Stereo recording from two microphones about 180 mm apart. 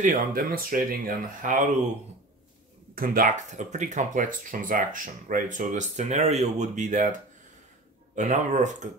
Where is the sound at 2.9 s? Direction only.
50° right (ahead or behind).